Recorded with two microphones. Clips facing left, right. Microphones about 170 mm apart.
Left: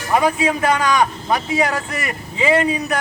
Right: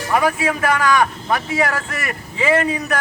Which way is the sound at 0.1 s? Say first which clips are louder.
Left 1 dB; 20° left (ahead or behind).